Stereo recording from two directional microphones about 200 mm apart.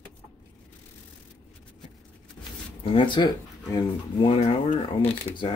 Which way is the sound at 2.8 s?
25° left (ahead or behind).